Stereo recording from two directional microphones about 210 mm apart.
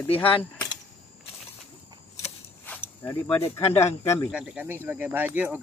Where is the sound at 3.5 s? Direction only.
10° left (ahead or behind).